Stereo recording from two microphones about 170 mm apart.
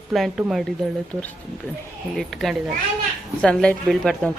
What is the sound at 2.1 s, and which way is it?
Speech, centre (ahead or behind).